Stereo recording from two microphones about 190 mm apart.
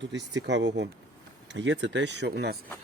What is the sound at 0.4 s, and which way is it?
Speech, 65° right (ahead or behind).